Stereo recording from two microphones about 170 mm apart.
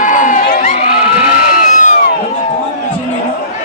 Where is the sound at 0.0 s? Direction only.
50° left (ahead or behind).